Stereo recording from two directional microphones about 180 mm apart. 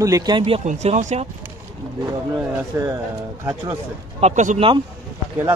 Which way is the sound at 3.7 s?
35° right (ahead or behind).